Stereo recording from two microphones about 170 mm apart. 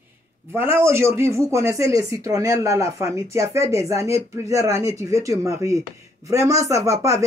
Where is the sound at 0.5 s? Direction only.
15° right (ahead or behind).